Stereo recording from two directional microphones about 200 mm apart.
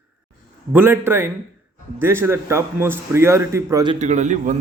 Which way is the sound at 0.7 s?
10° right (ahead or behind).